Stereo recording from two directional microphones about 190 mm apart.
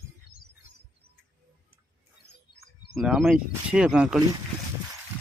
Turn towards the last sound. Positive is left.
turn(degrees=0)  # may be behind; listen again after turning